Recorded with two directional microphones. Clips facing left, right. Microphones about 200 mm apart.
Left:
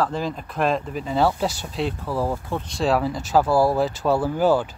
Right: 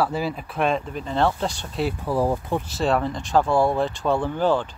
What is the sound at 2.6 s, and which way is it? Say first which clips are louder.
Speech: left 2 dB; centre (ahead or behind).